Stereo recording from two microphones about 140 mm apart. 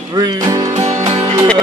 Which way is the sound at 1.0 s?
35° right (ahead or behind).